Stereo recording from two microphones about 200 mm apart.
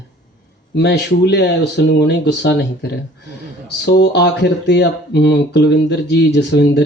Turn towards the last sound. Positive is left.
turn(degrees=60)  # may be behind; listen again after turning